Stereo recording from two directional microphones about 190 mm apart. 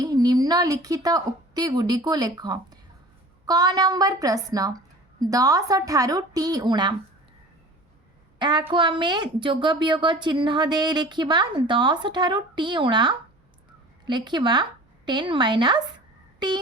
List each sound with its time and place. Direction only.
0.0 s a woman's voice: 20° right (ahead or behind)
8.4 s a woman's voice: 25° right (ahead or behind)